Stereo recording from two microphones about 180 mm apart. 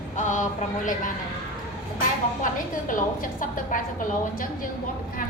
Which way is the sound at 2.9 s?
45° left (ahead or behind).